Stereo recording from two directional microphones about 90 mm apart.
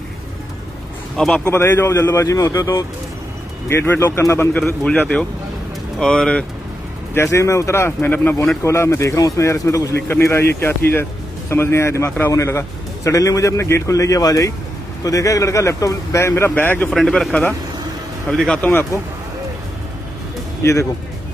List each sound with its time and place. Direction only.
1.1 s speech: 10° left (ahead or behind)
1.6 s a man's voice: 30° left (ahead or behind)
3.6 s speech: 25° left (ahead or behind)
5.9 s speech: 5° left (ahead or behind)
7.2 s a man's voice: 35° left (ahead or behind)
16.9 s speech: centre (ahead or behind)
18.6 s speech: 20° left (ahead or behind)
20.6 s speech: 30° left (ahead or behind)